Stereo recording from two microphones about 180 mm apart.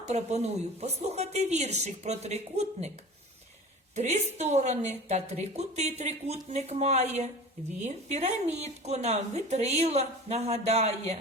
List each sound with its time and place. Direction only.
0.1 s speech: 40° right (ahead or behind)
3.9 s speech: 40° right (ahead or behind)